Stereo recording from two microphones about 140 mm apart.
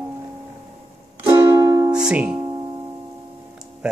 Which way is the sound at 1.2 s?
35° right (ahead or behind).